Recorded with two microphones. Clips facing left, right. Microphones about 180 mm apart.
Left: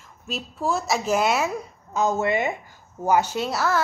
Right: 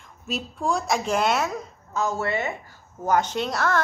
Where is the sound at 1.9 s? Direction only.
20° left (ahead or behind).